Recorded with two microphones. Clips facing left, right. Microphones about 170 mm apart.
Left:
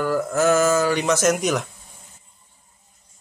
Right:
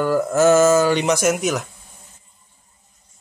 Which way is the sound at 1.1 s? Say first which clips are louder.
Even; 5° right (ahead or behind).